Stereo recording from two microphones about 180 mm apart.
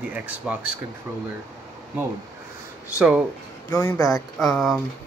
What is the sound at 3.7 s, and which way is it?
Speech, 20° left (ahead or behind).